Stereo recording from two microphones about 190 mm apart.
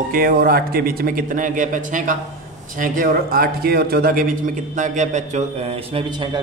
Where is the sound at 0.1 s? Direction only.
50° right (ahead or behind).